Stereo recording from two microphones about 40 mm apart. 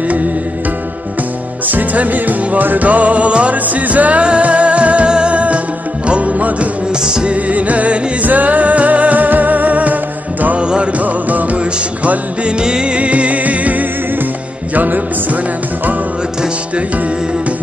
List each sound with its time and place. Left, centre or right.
1.7 s music: right
6.9 s music: centre
7.2 s music: right
10.6 s music: right